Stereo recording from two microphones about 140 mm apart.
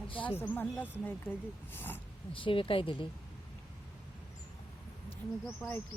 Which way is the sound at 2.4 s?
40° left (ahead or behind).